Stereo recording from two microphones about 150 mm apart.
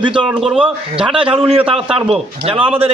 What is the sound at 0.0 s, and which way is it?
Speech, 35° right (ahead or behind).